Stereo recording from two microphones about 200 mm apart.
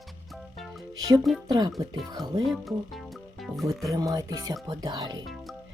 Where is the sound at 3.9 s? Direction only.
15° right (ahead or behind).